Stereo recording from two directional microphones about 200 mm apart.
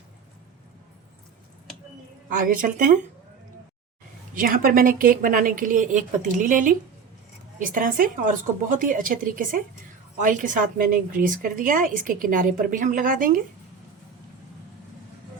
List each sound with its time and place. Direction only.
2.3 s a woman's voice: 45° right (ahead or behind)
4.4 s a woman's voice: 45° right (ahead or behind)